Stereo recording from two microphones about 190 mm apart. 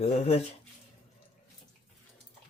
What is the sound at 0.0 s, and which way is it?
Speech, 35° left (ahead or behind).